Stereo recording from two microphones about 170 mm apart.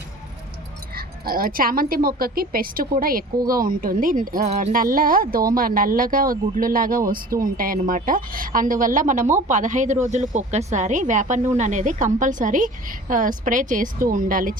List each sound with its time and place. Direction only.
0.9 s speech: 60° right (ahead or behind)